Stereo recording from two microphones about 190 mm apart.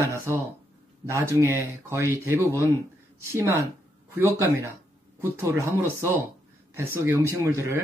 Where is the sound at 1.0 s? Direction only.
15° right (ahead or behind).